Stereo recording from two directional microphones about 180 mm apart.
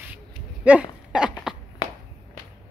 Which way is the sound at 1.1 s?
5° right (ahead or behind).